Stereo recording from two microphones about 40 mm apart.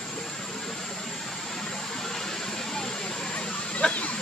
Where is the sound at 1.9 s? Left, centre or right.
Centre.